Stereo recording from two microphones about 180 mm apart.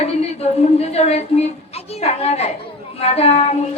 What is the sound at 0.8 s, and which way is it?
A woman's voice, 35° left (ahead or behind).